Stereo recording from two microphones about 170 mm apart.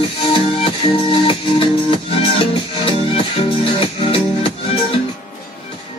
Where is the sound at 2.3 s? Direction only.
35° left (ahead or behind).